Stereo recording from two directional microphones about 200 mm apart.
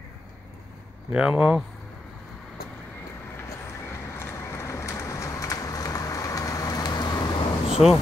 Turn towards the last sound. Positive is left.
turn(degrees=0)  # may be behind; listen again after turning